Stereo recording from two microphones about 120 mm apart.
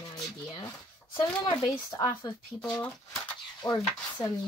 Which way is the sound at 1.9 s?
30° left (ahead or behind).